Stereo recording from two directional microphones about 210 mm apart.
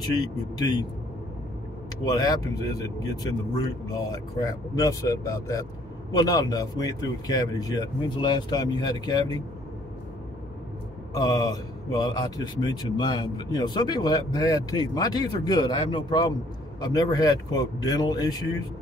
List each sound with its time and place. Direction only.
0.1 s a man's voice: 20° left (ahead or behind)
2.0 s a man's voice: 20° left (ahead or behind)
11.1 s a man's voice: 20° left (ahead or behind)